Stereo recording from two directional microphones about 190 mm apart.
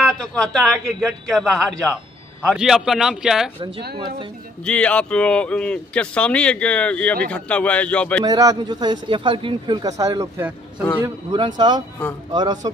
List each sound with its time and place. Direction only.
0.0 s a man's voice: 5° left (ahead or behind)
4.6 s speech: 5° left (ahead or behind)
8.3 s speech: 20° right (ahead or behind)